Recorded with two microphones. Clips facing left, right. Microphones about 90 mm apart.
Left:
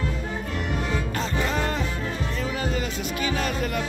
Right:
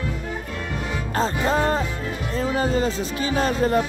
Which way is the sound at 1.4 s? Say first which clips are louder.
Right 6 dB; 35° right (ahead or behind).